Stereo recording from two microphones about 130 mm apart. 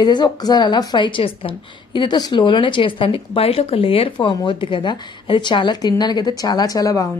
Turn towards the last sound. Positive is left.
turn(degrees=25)  # may be behind; listen again after turning